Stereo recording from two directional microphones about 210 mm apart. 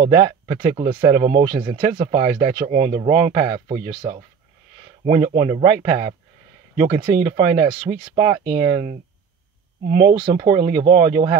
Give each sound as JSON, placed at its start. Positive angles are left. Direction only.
{"t": 0.0, "sound": "speech", "side_deg": -25}
{"t": 5.0, "sound": "speech", "side_deg": -35}
{"t": 10.1, "sound": "speech", "side_deg": -25}